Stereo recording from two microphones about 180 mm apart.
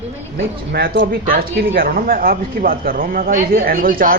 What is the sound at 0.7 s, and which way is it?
Speech, 60° right (ahead or behind).